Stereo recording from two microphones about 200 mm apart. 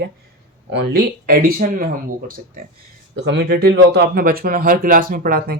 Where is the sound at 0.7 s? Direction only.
55° right (ahead or behind).